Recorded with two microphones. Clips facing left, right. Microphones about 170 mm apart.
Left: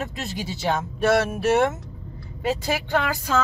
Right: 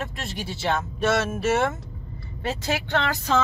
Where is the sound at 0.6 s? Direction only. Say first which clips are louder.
Left 1 dB; 15° left (ahead or behind).